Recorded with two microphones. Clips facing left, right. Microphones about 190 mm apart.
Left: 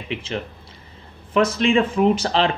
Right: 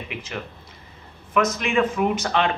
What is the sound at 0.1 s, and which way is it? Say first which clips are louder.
Speech: left 5 dB; 30° left (ahead or behind).